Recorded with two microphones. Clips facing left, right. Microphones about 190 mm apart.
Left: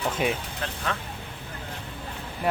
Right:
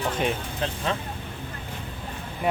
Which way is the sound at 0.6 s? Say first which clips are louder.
Right 4 dB; 20° right (ahead or behind).